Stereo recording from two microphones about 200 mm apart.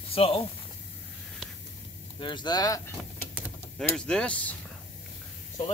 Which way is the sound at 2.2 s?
25° left (ahead or behind).